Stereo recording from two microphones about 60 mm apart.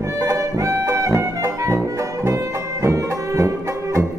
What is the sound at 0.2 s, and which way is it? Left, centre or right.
Music, right.